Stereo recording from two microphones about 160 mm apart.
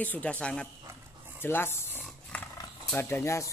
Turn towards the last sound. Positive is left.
turn(degrees=15)  # may be behind; listen again after turning